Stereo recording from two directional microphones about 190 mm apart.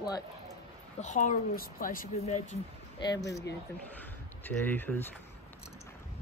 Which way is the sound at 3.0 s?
20° left (ahead or behind).